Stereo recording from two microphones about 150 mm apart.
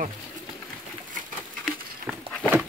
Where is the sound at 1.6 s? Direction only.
Centre (ahead or behind).